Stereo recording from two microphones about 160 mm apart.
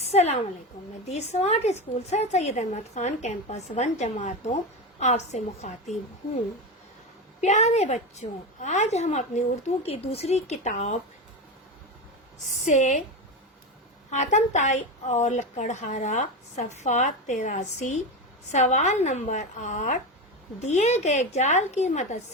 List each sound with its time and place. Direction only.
0.0 s a woman's voice: 40° left (ahead or behind)
7.4 s a woman's voice: 45° left (ahead or behind)
12.7 s a woman's voice: 45° left (ahead or behind)
14.1 s a woman's voice: 50° left (ahead or behind)